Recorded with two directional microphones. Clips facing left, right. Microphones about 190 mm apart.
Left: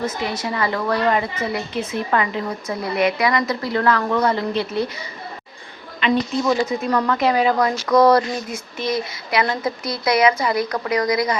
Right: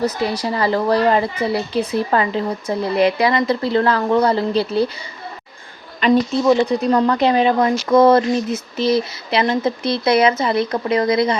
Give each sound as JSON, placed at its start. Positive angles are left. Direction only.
{"t": 0.0, "sound": "a woman's voice", "side_deg": -35}
{"t": 6.0, "sound": "speech", "side_deg": -40}
{"t": 6.7, "sound": "speech", "side_deg": -30}